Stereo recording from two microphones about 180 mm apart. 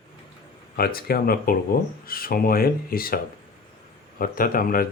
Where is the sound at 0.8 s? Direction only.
55° left (ahead or behind).